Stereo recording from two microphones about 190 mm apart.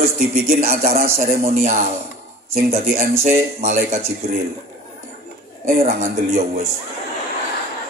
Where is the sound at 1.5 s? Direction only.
35° right (ahead or behind).